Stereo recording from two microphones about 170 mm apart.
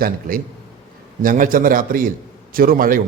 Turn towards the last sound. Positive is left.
turn(degrees=-55)  # may be behind; listen again after turning